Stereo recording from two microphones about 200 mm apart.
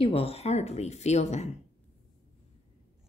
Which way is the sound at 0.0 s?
30° left (ahead or behind).